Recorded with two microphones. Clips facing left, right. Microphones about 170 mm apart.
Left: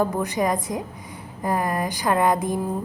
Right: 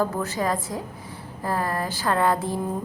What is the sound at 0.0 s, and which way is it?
A woman's voice, 15° left (ahead or behind).